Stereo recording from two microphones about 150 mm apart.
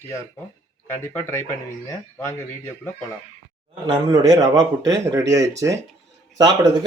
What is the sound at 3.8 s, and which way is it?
Speech, 25° right (ahead or behind).